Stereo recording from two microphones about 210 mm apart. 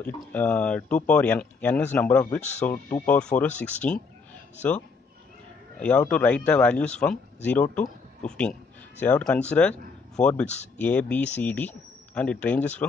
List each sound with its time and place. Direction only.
0.0 s speech: 10° left (ahead or behind)
5.8 s speech: 5° left (ahead or behind)
10.4 s speech: 35° left (ahead or behind)
10.8 s speech: 5° left (ahead or behind)